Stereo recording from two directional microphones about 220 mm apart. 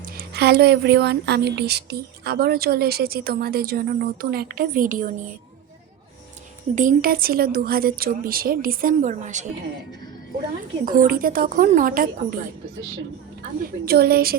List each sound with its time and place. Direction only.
0.0 s speech: 45° right (ahead or behind)
6.7 s a woman's voice: 40° right (ahead or behind)
10.8 s a woman's voice: 40° right (ahead or behind)
13.8 s speech: 45° right (ahead or behind)